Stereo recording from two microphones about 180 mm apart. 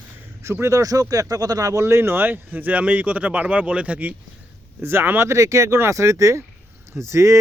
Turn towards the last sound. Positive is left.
turn(degrees=-15)  # may be behind; listen again after turning